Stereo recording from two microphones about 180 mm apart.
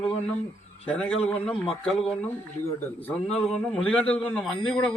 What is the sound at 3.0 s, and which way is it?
A man's voice, 10° left (ahead or behind).